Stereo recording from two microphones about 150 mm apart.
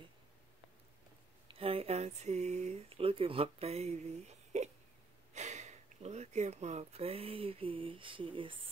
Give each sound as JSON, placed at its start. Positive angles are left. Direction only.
{"t": 1.5, "sound": "speech", "side_deg": -40}